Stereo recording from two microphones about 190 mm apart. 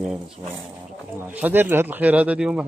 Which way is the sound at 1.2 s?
10° right (ahead or behind).